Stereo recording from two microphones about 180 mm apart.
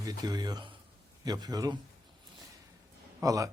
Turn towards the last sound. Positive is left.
turn(degrees=-20)  # may be behind; listen again after turning